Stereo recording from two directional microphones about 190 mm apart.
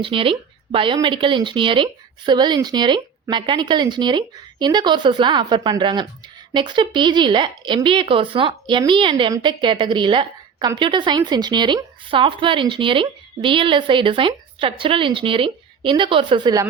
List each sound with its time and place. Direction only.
0.0 s a woman's voice: 30° right (ahead or behind)